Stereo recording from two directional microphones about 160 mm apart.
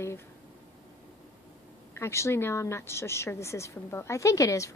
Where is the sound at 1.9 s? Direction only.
15° left (ahead or behind).